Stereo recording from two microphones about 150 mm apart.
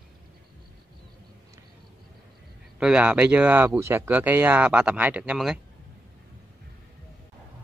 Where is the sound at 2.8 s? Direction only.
5° right (ahead or behind).